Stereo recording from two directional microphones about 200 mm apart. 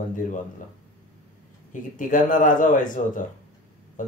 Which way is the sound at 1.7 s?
40° left (ahead or behind).